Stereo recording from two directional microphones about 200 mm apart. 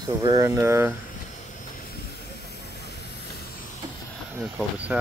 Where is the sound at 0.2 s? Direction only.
20° right (ahead or behind).